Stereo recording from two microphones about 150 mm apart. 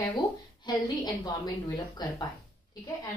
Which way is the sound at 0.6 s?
30° left (ahead or behind).